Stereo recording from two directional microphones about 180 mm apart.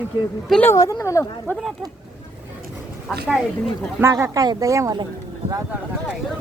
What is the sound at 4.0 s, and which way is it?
Speech, 15° right (ahead or behind).